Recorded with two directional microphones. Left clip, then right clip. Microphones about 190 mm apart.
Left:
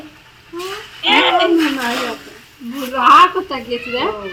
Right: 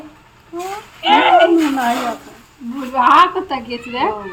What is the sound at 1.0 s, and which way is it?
Speech, 15° right (ahead or behind).